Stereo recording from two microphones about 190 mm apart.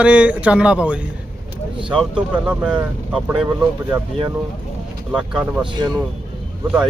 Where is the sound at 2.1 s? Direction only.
5° right (ahead or behind).